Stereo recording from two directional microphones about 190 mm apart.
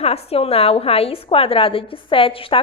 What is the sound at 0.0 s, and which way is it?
A woman's voice, 30° left (ahead or behind).